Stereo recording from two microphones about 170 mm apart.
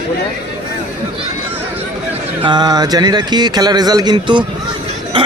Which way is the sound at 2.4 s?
25° right (ahead or behind).